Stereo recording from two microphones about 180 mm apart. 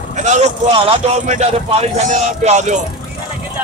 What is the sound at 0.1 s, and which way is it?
A man's voice, 40° right (ahead or behind).